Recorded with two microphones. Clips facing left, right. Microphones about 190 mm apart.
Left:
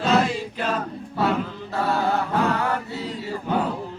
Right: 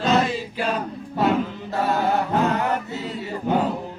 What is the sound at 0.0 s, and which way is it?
Choir, centre (ahead or behind).